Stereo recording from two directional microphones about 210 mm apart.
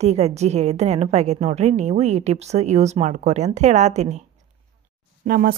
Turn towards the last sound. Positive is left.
turn(degrees=-45)  # may be behind; listen again after turning